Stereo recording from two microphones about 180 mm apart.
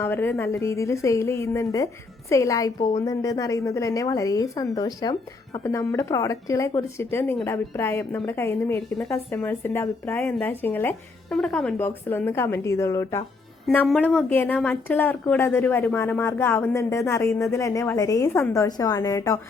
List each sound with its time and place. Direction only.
0.0 s a woman's voice: 10° left (ahead or behind)
13.7 s speech: 5° left (ahead or behind)